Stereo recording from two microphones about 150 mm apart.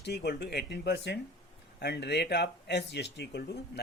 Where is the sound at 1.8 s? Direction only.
90° left.